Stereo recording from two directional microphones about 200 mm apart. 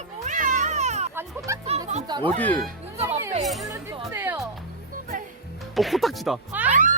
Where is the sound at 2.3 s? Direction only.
10° left (ahead or behind).